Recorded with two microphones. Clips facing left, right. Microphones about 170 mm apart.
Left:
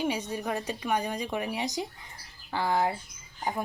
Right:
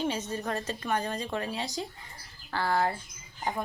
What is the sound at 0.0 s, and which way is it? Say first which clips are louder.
A woman's voice: left 1 dB; 15° left (ahead or behind).